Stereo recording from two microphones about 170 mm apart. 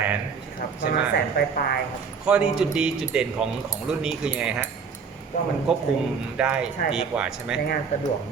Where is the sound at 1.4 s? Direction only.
65° left (ahead or behind).